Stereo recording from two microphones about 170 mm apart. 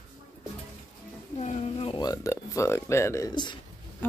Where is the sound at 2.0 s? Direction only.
20° left (ahead or behind).